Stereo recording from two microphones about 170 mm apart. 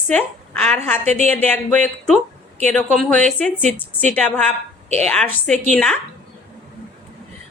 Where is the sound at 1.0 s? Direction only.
40° right (ahead or behind).